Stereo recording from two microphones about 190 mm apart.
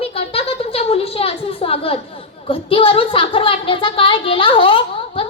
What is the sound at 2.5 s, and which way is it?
Music, 30° left (ahead or behind).